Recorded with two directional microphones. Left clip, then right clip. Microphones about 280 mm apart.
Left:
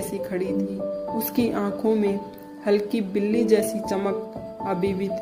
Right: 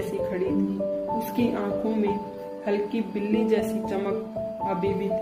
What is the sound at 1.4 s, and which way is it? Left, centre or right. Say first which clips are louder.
Speech: left 4 dB; left.